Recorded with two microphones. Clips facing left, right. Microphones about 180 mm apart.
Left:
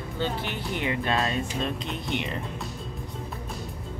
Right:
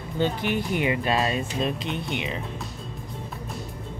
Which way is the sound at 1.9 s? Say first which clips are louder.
Right 1 dB; centre (ahead or behind).